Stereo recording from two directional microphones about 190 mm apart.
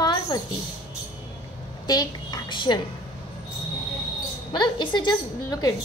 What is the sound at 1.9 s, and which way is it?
Speech, 20° left (ahead or behind).